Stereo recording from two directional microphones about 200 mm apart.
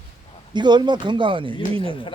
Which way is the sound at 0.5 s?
20° right (ahead or behind).